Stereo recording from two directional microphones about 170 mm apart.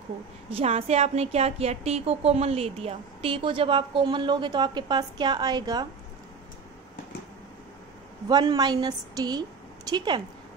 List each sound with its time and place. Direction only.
0.5 s a woman's voice: 35° right (ahead or behind)
8.3 s a woman's voice: 25° right (ahead or behind)